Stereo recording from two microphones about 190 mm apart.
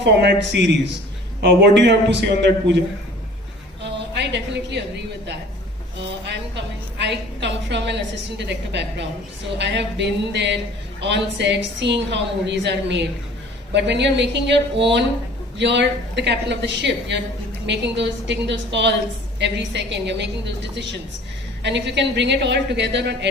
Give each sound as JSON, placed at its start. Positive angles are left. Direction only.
{"t": 0.0, "sound": "a woman's voice", "side_deg": -65}
{"t": 4.2, "sound": "a sound", "side_deg": -65}
{"t": 7.0, "sound": "a woman's voice", "side_deg": -65}